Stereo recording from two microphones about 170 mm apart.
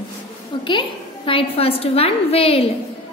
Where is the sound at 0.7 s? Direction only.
30° left (ahead or behind).